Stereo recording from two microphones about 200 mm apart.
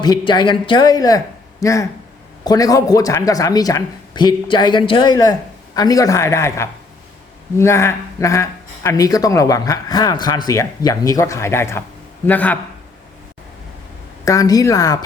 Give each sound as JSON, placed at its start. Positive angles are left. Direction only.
{"t": 0.0, "sound": "speech", "side_deg": 20}
{"t": 14.3, "sound": "speech", "side_deg": 15}